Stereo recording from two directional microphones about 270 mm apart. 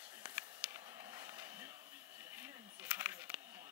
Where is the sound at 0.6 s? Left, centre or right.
Centre.